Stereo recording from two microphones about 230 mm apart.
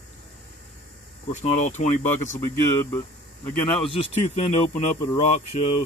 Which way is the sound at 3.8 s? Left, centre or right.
Left.